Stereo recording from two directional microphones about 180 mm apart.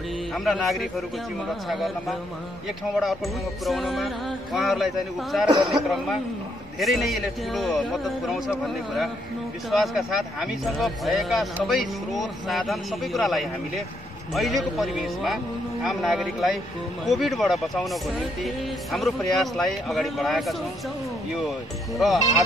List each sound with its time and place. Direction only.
0.3 s speech: centre (ahead or behind)
3.6 s speech: centre (ahead or behind)
5.5 s speech: 25° right (ahead or behind)
6.8 s speech: centre (ahead or behind)
21.9 s speech: centre (ahead or behind)